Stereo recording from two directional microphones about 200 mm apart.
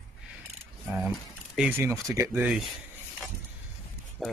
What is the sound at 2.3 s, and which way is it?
Speech, centre (ahead or behind).